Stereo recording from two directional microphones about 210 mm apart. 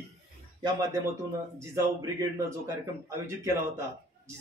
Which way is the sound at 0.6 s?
20° right (ahead or behind).